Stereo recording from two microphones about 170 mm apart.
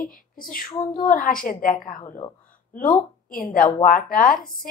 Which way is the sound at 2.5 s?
55° left (ahead or behind).